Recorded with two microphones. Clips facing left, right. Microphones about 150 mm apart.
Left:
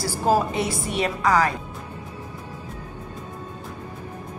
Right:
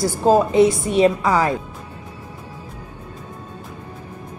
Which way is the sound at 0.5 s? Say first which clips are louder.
Right 10 dB; 25° right (ahead or behind).